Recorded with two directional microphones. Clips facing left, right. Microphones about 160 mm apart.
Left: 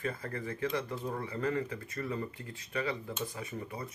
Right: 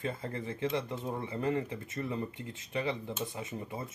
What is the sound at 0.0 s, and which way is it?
Speech, 20° right (ahead or behind).